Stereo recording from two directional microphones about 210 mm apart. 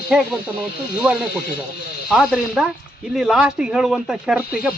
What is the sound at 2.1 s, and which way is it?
A man's voice, centre (ahead or behind).